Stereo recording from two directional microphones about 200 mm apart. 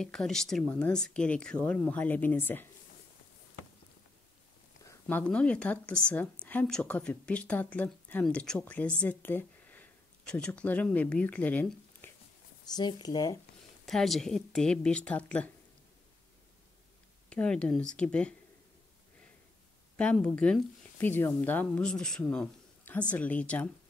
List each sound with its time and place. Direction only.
0.0 s speech: 5° left (ahead or behind)
5.0 s speech: 5° left (ahead or behind)
12.7 s speech: 20° left (ahead or behind)
13.8 s speech: centre (ahead or behind)
17.3 s speech: 5° left (ahead or behind)
20.0 s speech: 5° left (ahead or behind)